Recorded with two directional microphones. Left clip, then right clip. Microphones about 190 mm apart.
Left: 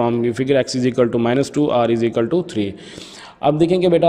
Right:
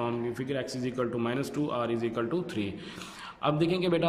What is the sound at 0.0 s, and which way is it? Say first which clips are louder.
A man's voice: left 14 dB; 35° left (ahead or behind).